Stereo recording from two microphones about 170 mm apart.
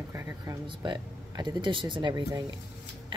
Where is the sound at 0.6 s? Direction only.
25° right (ahead or behind).